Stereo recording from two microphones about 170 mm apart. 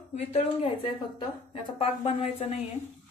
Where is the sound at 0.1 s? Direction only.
40° left (ahead or behind).